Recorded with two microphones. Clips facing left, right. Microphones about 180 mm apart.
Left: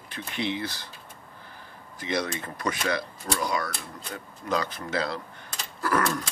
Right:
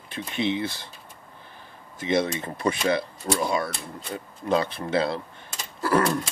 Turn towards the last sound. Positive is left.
turn(degrees=-30)  # may be behind; listen again after turning